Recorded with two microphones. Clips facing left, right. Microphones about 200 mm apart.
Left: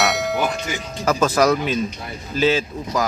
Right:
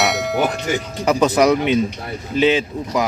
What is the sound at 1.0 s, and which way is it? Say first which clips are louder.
A man's voice: right 2 dB; 15° right (ahead or behind).